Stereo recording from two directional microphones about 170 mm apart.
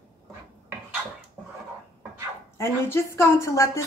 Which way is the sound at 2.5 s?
15° left (ahead or behind).